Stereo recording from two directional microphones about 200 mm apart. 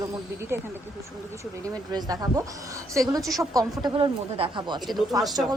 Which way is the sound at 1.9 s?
20° right (ahead or behind).